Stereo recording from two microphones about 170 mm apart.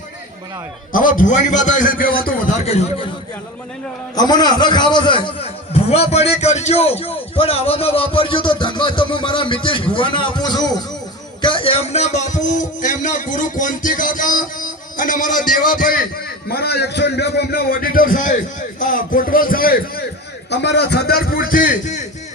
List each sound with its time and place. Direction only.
0.9 s speech: 55° left (ahead or behind)
4.1 s a man's voice: 25° left (ahead or behind); by 16.0 s 55° left (ahead or behind)
16.5 s a man's voice: 70° left (ahead or behind)
20.5 s a man's voice: 85° left; by 21.8 s 55° left (ahead or behind)